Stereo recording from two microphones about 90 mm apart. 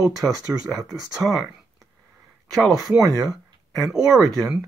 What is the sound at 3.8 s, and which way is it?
Speech, 5° right (ahead or behind).